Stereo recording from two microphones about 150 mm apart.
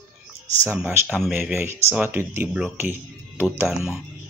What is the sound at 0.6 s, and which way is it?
Speech, 15° right (ahead or behind).